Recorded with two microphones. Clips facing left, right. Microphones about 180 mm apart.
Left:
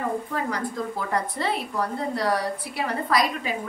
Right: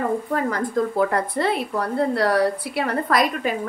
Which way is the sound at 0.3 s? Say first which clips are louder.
Right 5 dB; 50° right (ahead or behind).